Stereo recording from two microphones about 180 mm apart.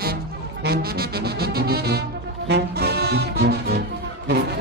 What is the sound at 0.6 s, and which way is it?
Brass instrument, 60° right (ahead or behind).